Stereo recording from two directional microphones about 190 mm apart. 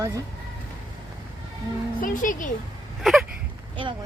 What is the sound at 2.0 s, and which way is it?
Speech, 45° left (ahead or behind).